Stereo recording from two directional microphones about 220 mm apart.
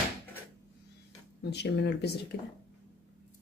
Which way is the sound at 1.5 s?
50° left (ahead or behind).